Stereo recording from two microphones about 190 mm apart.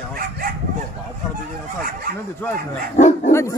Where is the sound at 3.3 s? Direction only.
15° left (ahead or behind).